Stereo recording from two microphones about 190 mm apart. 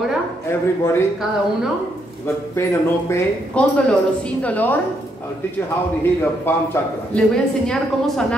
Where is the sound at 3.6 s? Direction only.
5° left (ahead or behind).